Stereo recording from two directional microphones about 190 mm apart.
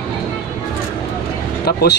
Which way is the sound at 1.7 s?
55° left (ahead or behind).